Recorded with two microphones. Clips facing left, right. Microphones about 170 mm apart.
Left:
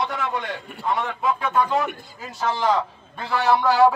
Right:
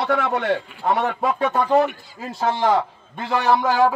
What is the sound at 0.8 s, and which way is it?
A man's voice, 45° right (ahead or behind).